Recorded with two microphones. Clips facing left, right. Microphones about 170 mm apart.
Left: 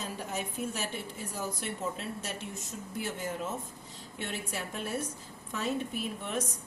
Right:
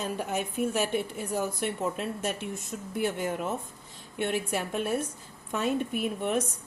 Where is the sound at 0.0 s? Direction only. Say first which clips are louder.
Right 6 dB; 60° right (ahead or behind).